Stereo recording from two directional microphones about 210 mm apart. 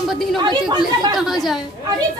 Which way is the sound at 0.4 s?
20° right (ahead or behind).